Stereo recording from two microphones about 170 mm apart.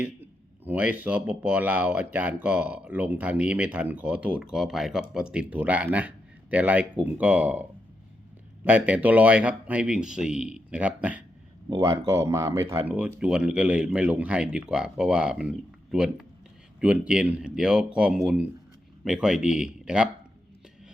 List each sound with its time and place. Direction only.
0.0 s speech: 10° right (ahead or behind)
8.6 s speech: 10° right (ahead or behind)